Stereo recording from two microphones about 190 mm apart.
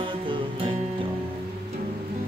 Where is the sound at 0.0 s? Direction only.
25° right (ahead or behind).